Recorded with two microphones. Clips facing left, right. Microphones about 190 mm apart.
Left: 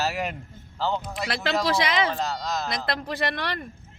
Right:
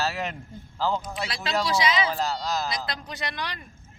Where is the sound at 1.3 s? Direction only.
60° left (ahead or behind).